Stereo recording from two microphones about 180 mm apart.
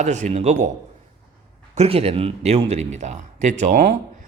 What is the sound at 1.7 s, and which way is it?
Speech, 35° right (ahead or behind).